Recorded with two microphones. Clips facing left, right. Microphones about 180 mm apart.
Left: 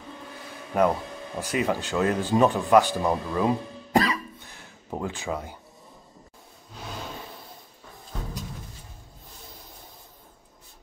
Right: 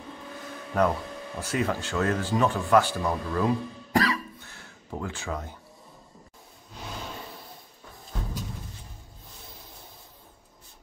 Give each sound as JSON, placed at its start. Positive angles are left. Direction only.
{"t": 0.7, "sound": "speech", "side_deg": 10}
{"t": 3.0, "sound": "music", "side_deg": 25}